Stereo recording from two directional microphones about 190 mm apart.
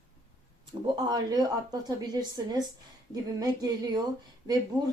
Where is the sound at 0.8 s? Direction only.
25° right (ahead or behind).